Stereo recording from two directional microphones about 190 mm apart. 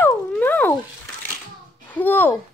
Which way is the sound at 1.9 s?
10° left (ahead or behind).